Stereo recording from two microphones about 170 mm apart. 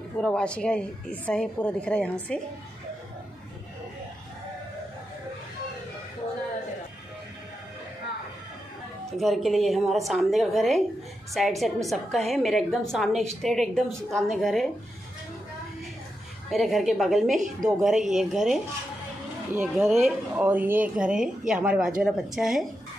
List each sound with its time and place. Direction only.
0.2 s a woman's voice: 5° left (ahead or behind)
9.1 s a woman's voice: centre (ahead or behind)
16.4 s a woman's voice: centre (ahead or behind)